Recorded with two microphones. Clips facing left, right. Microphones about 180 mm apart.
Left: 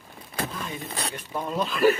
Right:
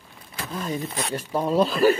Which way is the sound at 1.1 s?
35° right (ahead or behind).